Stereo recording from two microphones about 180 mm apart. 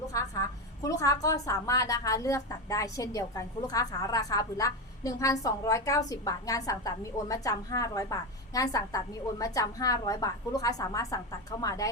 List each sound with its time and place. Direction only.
0.1 s a woman's voice: 20° left (ahead or behind)